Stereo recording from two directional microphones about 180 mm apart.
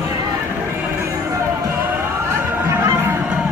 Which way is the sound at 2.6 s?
10° right (ahead or behind).